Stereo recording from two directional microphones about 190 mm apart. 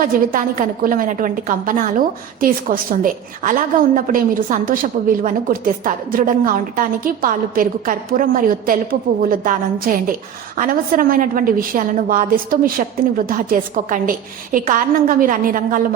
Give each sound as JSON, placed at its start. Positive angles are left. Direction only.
{"t": 0.0, "sound": "a woman's voice", "side_deg": -45}